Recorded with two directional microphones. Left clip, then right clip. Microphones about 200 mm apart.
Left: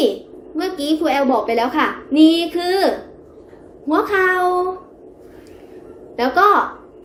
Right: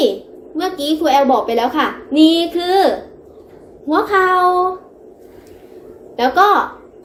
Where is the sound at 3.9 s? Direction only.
5° left (ahead or behind).